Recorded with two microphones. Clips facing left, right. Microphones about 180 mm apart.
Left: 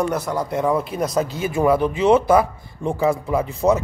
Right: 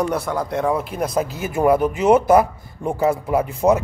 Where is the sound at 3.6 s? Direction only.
30° right (ahead or behind).